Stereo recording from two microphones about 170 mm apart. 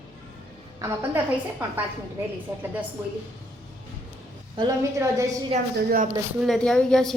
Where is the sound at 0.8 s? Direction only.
10° right (ahead or behind).